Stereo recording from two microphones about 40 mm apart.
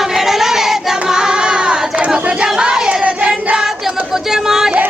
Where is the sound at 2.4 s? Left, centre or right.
Centre.